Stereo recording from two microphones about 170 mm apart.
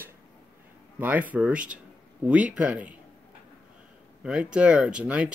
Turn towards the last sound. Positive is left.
turn(degrees=-5)  # may be behind; listen again after turning